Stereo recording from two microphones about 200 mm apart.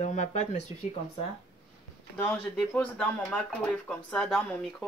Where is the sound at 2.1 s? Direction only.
5° left (ahead or behind).